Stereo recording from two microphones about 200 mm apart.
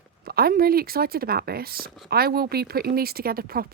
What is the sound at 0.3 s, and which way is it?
Speech, 50° right (ahead or behind).